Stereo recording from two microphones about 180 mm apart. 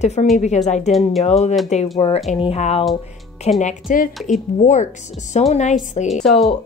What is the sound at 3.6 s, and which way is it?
A woman's voice, 50° left (ahead or behind).